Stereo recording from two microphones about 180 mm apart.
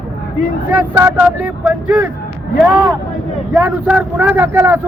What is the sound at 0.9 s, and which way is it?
Speech, 10° right (ahead or behind).